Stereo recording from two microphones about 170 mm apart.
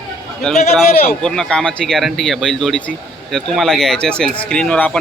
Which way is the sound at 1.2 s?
5° left (ahead or behind).